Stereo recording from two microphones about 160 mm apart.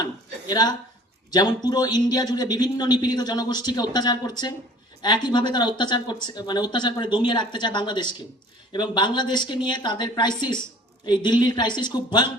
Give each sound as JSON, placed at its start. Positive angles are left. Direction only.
{"t": 0.0, "sound": "a man's voice", "side_deg": 25}